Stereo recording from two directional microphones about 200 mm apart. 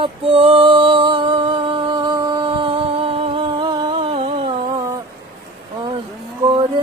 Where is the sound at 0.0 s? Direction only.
25° right (ahead or behind).